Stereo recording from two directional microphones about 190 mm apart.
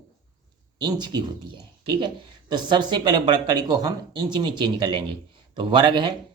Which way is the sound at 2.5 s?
25° right (ahead or behind).